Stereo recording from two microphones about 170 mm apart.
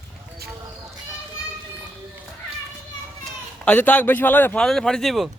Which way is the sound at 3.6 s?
10° left (ahead or behind).